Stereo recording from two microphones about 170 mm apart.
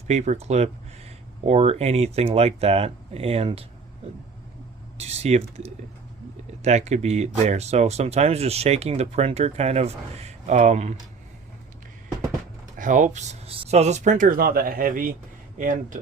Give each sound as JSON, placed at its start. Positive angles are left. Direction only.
{"t": 0.1, "sound": "speech", "side_deg": -40}
{"t": 4.9, "sound": "speech", "side_deg": -40}
{"t": 6.6, "sound": "speech", "side_deg": -40}
{"t": 12.7, "sound": "speech", "side_deg": -50}